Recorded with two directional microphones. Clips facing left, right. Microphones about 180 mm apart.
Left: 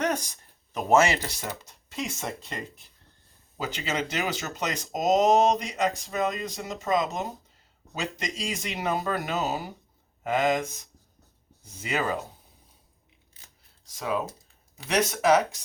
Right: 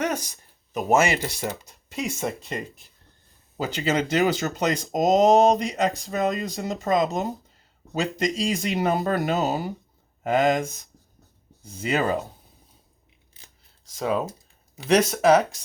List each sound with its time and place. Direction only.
0.0 s a sound: 5° right (ahead or behind)
1.4 s speech: 10° right (ahead or behind)
3.6 s speech: 35° right (ahead or behind)
14.9 s speech: 30° right (ahead or behind)